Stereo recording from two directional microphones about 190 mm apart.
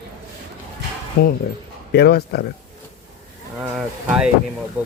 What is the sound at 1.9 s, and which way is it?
Speech, 60° left (ahead or behind).